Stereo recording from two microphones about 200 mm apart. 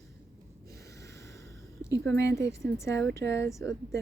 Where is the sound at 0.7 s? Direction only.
15° left (ahead or behind).